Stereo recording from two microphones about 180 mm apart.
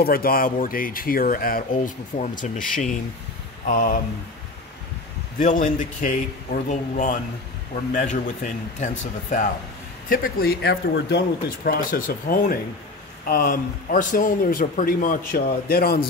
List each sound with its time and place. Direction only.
0.0 s a man's voice: 55° left (ahead or behind)
5.4 s a man's voice: 45° left (ahead or behind)